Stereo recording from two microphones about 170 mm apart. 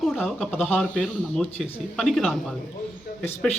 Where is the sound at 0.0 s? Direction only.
Centre (ahead or behind).